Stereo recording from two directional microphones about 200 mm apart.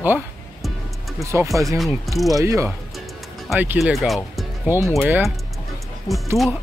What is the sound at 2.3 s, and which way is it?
Speech, 15° right (ahead or behind).